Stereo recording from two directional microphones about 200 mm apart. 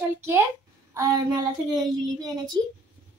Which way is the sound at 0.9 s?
15° right (ahead or behind).